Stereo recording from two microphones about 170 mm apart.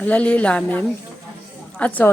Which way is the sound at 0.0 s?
10° left (ahead or behind).